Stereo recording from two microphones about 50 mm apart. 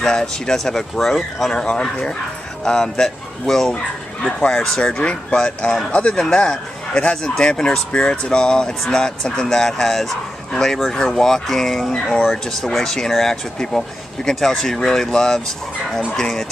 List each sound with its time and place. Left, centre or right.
0.0 s speech: centre
1.5 s speech: centre
6.1 s speech: centre